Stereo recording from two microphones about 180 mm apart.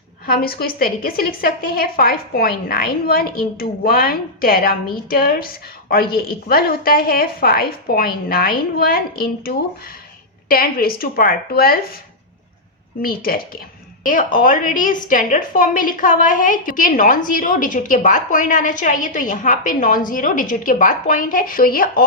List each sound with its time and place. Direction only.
0.3 s a woman's voice: 55° left (ahead or behind)
13.0 s a woman's voice: 55° left (ahead or behind)